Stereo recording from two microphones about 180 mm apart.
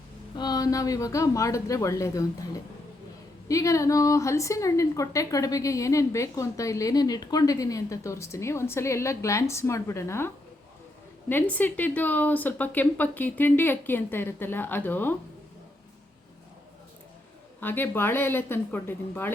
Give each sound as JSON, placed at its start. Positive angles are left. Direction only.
{"t": 0.3, "sound": "a woman's voice", "side_deg": 20}
{"t": 3.5, "sound": "a woman's voice", "side_deg": 15}
{"t": 17.6, "sound": "a woman's voice", "side_deg": 10}